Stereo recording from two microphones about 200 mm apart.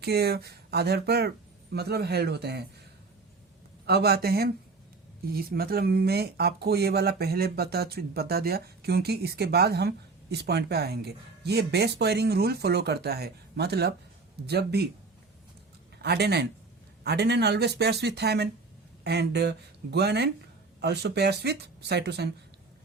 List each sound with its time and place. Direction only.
0.0 s speech: 55° right (ahead or behind)
3.8 s speech: 55° right (ahead or behind)
16.0 s a man's voice: 55° right (ahead or behind)